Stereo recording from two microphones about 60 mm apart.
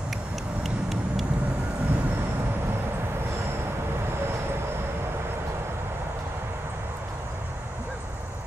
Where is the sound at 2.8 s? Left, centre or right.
Right.